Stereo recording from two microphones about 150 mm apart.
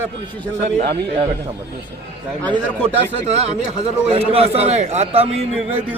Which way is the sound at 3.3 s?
45° right (ahead or behind).